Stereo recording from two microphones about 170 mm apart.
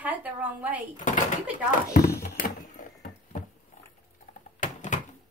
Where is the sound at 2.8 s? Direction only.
55° left (ahead or behind).